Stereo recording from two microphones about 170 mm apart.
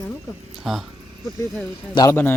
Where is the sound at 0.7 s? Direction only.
Centre (ahead or behind).